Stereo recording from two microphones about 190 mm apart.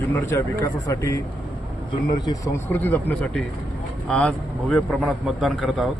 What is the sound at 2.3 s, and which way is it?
A man's voice, 15° left (ahead or behind).